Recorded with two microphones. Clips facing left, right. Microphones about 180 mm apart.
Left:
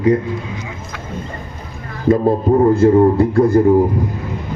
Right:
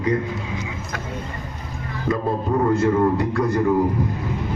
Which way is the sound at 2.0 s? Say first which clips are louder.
Left 9 dB; 40° left (ahead or behind).